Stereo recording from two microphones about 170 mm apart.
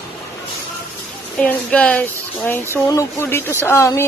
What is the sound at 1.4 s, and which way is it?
Speech, 10° left (ahead or behind).